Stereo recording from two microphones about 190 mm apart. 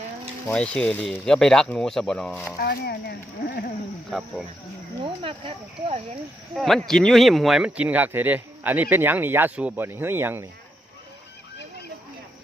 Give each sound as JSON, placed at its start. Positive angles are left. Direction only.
{"t": 0.4, "sound": "speech", "side_deg": 5}
{"t": 2.6, "sound": "speech", "side_deg": 55}
{"t": 5.0, "sound": "speech", "side_deg": -25}
{"t": 6.5, "sound": "speech", "side_deg": 0}